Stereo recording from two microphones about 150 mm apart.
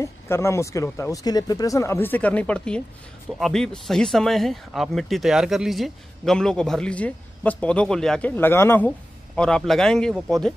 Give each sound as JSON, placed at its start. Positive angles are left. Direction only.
{"t": 0.0, "sound": "speech", "side_deg": 20}